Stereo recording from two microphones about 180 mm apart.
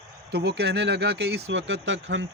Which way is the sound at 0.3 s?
65° right (ahead or behind).